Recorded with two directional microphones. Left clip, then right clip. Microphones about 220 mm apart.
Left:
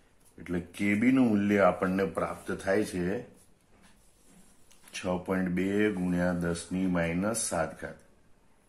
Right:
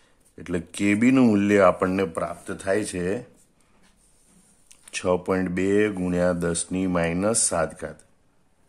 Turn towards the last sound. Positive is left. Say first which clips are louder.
# right 6 dB
turn(degrees=-45)  # may be behind; listen again after turning